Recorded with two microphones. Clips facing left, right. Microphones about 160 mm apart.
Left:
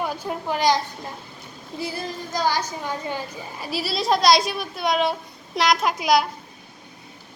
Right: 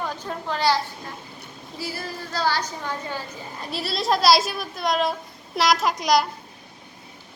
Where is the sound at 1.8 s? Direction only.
20° left (ahead or behind).